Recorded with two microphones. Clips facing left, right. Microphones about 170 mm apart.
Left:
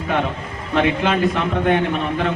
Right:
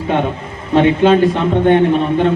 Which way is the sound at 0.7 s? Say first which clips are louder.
Right 8 dB; 30° right (ahead or behind).